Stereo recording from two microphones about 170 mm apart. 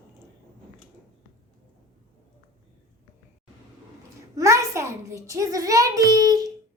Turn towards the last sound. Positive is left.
turn(degrees=-20)  # may be behind; listen again after turning